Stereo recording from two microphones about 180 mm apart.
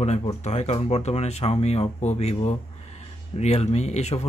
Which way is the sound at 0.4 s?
35° left (ahead or behind).